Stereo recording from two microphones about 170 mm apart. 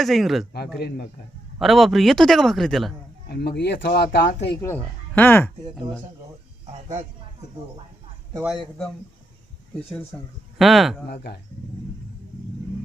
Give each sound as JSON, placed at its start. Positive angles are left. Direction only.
{"t": 0.0, "sound": "a man's voice", "side_deg": 0}
{"t": 1.5, "sound": "a man's voice", "side_deg": 0}
{"t": 3.2, "sound": "speech", "side_deg": 70}
{"t": 4.5, "sound": "speech", "side_deg": 15}
{"t": 8.4, "sound": "a man's voice", "side_deg": 0}
{"t": 10.6, "sound": "a man's voice", "side_deg": 0}
{"t": 11.1, "sound": "speech", "side_deg": 65}